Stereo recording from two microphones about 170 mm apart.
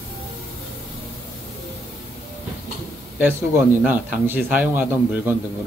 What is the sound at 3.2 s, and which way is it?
A man's voice, 10° right (ahead or behind).